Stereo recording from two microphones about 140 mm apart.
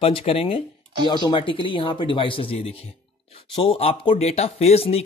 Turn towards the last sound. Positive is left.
turn(degrees=45)  # may be behind; listen again after turning